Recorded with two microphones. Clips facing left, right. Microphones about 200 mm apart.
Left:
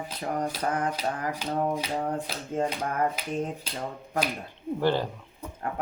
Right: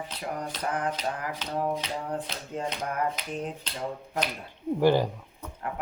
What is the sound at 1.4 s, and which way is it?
Rub, 10° left (ahead or behind).